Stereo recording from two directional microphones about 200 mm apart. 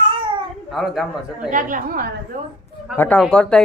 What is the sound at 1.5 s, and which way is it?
Speech, 40° right (ahead or behind).